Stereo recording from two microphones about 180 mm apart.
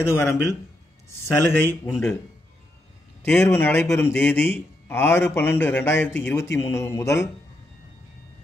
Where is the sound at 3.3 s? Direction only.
10° left (ahead or behind).